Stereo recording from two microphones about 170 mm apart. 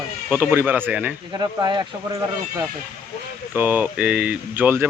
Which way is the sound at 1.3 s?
25° right (ahead or behind).